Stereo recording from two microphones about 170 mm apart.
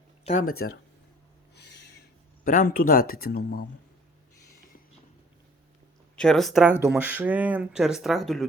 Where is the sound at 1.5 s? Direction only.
85° left.